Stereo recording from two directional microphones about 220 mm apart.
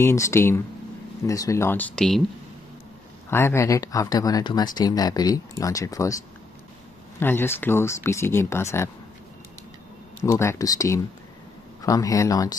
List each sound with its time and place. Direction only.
0.0 s speech: 10° left (ahead or behind)
3.3 s speech: 10° left (ahead or behind)
7.2 s speech: 10° left (ahead or behind)
10.2 s speech: 15° left (ahead or behind)